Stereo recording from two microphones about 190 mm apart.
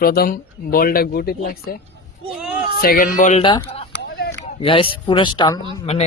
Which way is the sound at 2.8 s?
50° left (ahead or behind).